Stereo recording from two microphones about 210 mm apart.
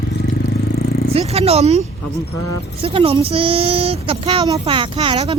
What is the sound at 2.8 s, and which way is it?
Speech, 25° right (ahead or behind).